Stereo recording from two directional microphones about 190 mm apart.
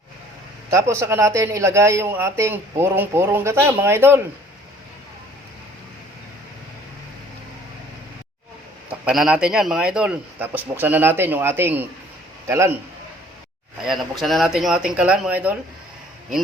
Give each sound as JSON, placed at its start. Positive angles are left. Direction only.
{"t": 0.7, "sound": "a man's voice", "side_deg": -15}
{"t": 8.9, "sound": "a man's voice", "side_deg": -5}
{"t": 13.8, "sound": "speech", "side_deg": 0}